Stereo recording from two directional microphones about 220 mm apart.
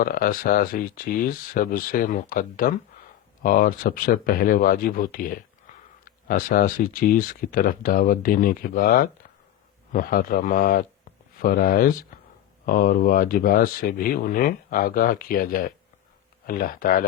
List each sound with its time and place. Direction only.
0.0 s speech: 40° left (ahead or behind)